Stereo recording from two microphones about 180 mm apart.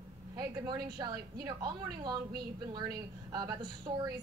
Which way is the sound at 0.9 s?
25° right (ahead or behind).